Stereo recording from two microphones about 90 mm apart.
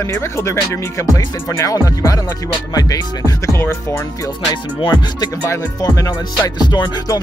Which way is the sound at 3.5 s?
30° left (ahead or behind).